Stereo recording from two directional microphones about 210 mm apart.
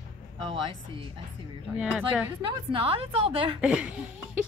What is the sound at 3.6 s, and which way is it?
Chuckle, 5° right (ahead or behind).